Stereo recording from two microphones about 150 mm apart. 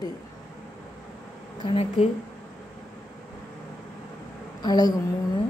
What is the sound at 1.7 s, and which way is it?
Speech, 40° left (ahead or behind).